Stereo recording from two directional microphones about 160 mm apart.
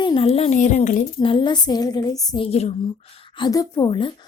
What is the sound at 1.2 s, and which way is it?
Speech, 30° left (ahead or behind).